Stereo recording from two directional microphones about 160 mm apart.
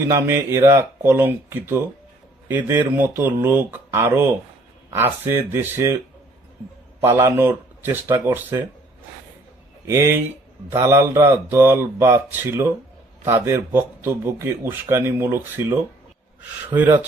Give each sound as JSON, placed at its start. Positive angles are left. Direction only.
{"t": 0.1, "sound": "speech", "side_deg": -15}
{"t": 7.0, "sound": "speech", "side_deg": -15}
{"t": 9.8, "sound": "speech", "side_deg": -15}